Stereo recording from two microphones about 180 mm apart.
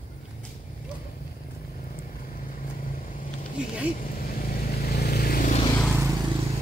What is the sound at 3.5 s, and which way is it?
Speech, 5° right (ahead or behind).